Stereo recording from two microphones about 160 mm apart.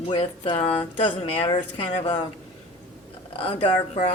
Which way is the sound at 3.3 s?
35° left (ahead or behind).